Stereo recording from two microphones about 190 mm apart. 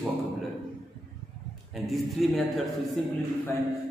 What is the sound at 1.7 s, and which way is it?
Speech, centre (ahead or behind).